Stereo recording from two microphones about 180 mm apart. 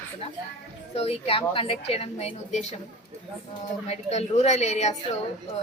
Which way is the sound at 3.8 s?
35° left (ahead or behind).